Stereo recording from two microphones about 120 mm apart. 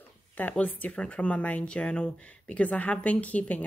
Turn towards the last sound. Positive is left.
turn(degrees=10)  # may be behind; listen again after turning